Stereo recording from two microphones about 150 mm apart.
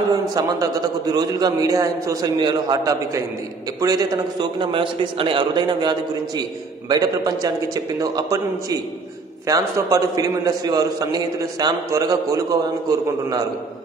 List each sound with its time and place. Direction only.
0.3 s a man's voice: 25° right (ahead or behind)